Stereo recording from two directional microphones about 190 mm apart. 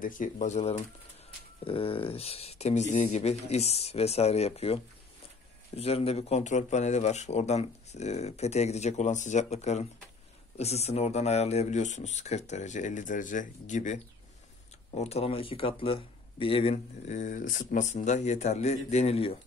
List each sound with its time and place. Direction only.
0.0 s speech: 45° left (ahead or behind)